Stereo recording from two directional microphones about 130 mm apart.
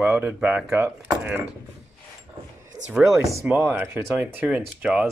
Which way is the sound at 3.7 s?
15° right (ahead or behind).